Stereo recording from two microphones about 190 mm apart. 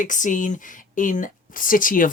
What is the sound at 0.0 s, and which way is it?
Speech, 40° left (ahead or behind).